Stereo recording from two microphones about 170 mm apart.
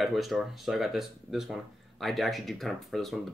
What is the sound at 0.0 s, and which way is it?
Speech, centre (ahead or behind).